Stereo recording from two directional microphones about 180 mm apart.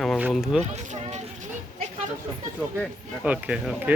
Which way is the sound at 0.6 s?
40° right (ahead or behind).